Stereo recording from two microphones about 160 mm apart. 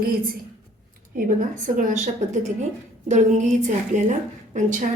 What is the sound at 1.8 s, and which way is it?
A woman's voice, 50° right (ahead or behind).